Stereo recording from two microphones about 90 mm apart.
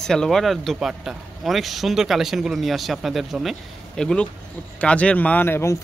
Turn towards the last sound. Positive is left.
turn(degrees=30)  # may be behind; listen again after turning